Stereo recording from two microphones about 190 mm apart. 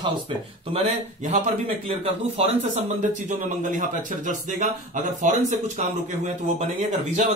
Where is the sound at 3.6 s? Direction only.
45° right (ahead or behind).